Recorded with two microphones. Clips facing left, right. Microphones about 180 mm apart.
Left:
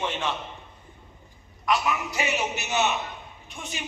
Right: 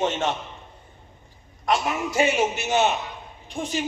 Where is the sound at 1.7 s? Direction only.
50° right (ahead or behind).